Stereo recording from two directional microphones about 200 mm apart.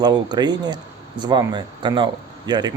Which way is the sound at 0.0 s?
20° right (ahead or behind).